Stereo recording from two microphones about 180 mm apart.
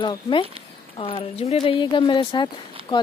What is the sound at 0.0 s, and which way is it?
A woman's voice, 30° left (ahead or behind).